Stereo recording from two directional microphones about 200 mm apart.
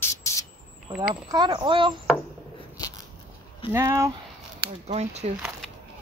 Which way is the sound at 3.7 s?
15° right (ahead or behind).